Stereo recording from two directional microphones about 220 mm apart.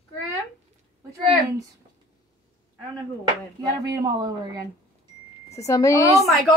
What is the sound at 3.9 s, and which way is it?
Speech, 15° right (ahead or behind).